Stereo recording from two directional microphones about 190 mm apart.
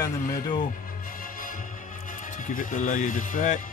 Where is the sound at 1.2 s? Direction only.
45° left (ahead or behind).